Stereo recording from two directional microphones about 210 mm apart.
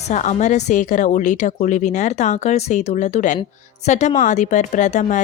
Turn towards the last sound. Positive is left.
turn(degrees=35)  # may be behind; listen again after turning